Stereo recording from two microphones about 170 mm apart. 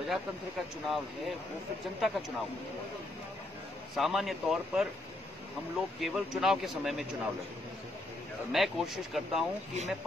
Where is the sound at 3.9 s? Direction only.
Centre (ahead or behind).